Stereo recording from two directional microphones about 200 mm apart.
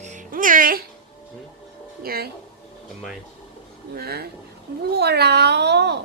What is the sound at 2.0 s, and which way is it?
Music, 50° right (ahead or behind).